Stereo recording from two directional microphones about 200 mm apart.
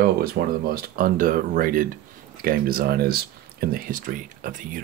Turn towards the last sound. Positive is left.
turn(degrees=-40)  # may be behind; listen again after turning